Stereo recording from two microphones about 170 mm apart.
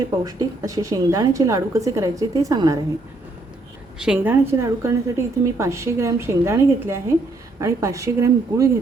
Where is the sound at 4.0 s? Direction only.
10° right (ahead or behind).